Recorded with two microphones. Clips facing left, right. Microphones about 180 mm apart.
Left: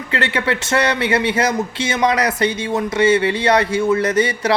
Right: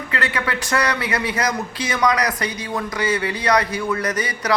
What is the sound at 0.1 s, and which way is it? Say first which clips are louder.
Speech: left 5 dB; 25° left (ahead or behind).